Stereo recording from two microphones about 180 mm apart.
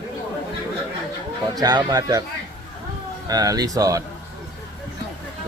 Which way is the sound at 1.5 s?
20° right (ahead or behind).